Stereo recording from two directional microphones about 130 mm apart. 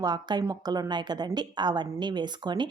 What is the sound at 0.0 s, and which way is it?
A woman's voice, 35° right (ahead or behind).